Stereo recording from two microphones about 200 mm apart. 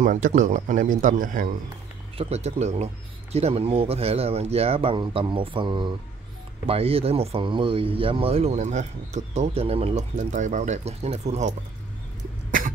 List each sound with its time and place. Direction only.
0.0 s speech: 40° right (ahead or behind)
2.1 s speech: 30° right (ahead or behind)
12.4 s cough: 40° right (ahead or behind)